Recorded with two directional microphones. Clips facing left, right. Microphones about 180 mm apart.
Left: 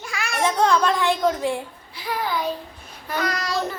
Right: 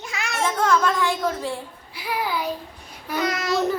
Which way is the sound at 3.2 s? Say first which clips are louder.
Right 1 dB; 20° right (ahead or behind).